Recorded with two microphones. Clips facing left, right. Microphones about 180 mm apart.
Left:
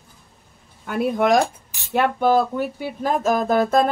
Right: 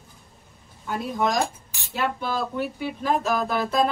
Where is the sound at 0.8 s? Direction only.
60° left (ahead or behind).